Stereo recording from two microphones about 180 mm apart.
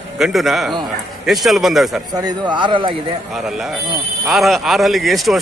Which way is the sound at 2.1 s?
25° right (ahead or behind).